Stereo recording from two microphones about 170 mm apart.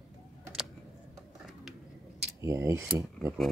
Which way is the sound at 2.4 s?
15° right (ahead or behind).